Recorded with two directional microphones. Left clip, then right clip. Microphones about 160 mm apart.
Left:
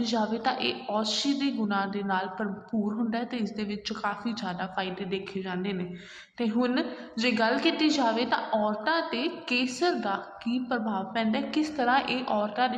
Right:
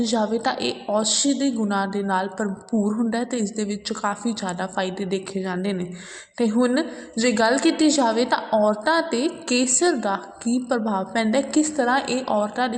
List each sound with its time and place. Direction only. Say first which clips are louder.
0.0 s a woman's voice: right 6 dB; 35° right (ahead or behind)